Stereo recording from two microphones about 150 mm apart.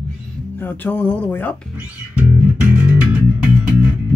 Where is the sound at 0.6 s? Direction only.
10° left (ahead or behind).